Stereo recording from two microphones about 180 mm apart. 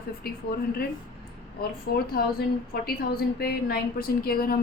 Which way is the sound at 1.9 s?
60° left (ahead or behind).